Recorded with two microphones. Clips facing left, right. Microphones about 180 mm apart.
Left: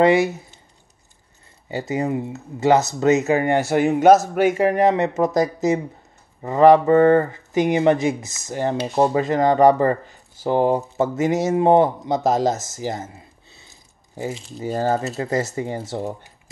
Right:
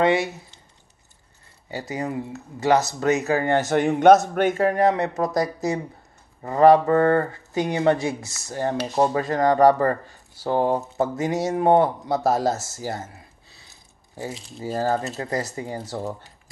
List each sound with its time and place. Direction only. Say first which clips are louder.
0.0 s speech: left 4 dB; 25° left (ahead or behind)
1.7 s speech: left 5 dB; 25° left (ahead or behind)
14.3 s speech: left 4 dB; centre (ahead or behind)
14.8 s speech: left 2 dB; 25° left (ahead or behind)